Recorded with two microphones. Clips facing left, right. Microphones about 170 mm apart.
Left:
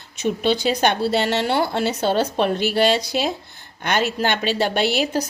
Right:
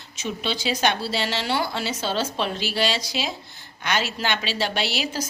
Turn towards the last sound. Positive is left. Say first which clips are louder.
# left 7 dB
turn(degrees=55)  # may be behind; listen again after turning